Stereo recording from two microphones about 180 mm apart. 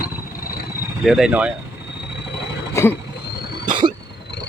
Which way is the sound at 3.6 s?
25° right (ahead or behind).